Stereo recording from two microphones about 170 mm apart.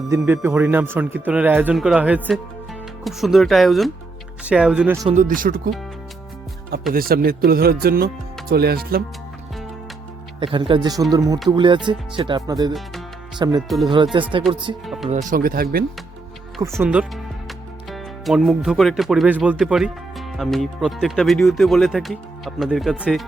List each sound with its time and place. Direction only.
0.1 s speech: 15° right (ahead or behind)
5.0 s speech: 45° right (ahead or behind)
6.9 s speech: 60° right (ahead or behind)
10.4 s speech: 30° right (ahead or behind)
13.6 s speech: centre (ahead or behind)
13.9 s speech: 30° right (ahead or behind)
15.1 s speech: 50° right (ahead or behind)
16.8 s speech: 5° right (ahead or behind)